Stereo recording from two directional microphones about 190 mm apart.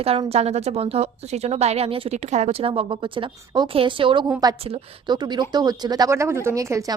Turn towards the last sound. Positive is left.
turn(degrees=-15)  # may be behind; listen again after turning